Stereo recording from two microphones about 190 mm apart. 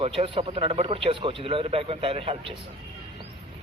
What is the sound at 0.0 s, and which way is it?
A man's voice, 30° right (ahead or behind).